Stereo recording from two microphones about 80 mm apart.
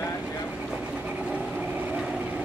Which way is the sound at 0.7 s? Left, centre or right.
Centre.